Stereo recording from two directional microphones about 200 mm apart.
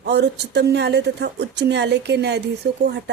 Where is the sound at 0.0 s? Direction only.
55° right (ahead or behind).